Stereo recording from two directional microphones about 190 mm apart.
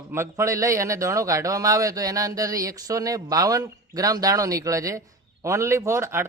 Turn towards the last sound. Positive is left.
turn(degrees=-15)  # may be behind; listen again after turning